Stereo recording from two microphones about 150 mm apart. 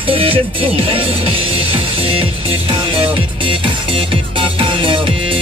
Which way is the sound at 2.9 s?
35° right (ahead or behind).